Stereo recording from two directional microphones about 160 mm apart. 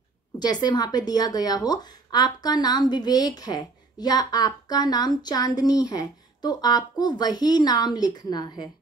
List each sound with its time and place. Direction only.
0.4 s speech: 25° left (ahead or behind)